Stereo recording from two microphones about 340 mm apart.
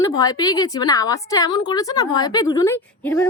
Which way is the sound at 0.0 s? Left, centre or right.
Centre.